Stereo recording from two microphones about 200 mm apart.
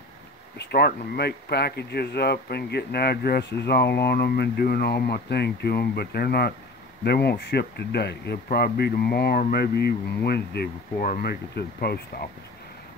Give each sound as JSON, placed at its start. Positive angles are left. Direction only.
{"t": 0.6, "sound": "speech", "side_deg": 50}